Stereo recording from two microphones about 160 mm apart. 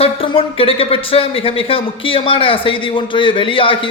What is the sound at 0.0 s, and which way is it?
Speech, 35° left (ahead or behind).